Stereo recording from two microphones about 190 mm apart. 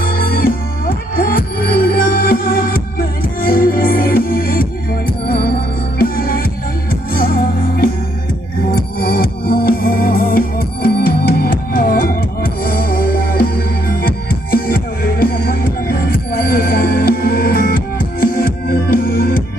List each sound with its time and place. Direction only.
0.0 s music: 50° left (ahead or behind)